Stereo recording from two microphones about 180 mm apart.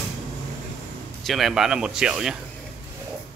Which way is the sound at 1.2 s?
Centre (ahead or behind).